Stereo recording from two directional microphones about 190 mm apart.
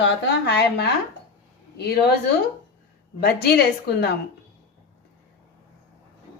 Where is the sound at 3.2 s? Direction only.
55° left (ahead or behind).